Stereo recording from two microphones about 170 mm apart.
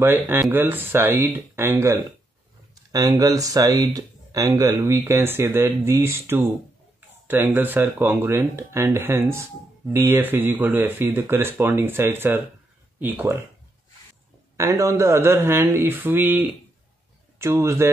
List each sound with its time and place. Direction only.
0.0 s speech: 15° right (ahead or behind)
14.6 s speech: 15° right (ahead or behind)